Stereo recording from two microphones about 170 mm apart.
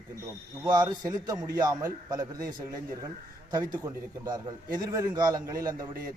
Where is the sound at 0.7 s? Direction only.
25° right (ahead or behind).